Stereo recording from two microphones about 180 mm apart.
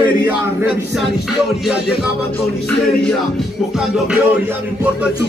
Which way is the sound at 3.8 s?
5° right (ahead or behind).